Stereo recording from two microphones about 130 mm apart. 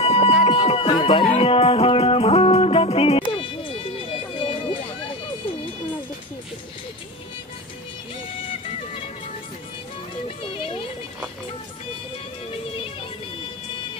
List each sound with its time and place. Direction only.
0.0 s music: 50° left (ahead or behind)
4.4 s run: 40° left (ahead or behind)
10.2 s music: 45° left (ahead or behind)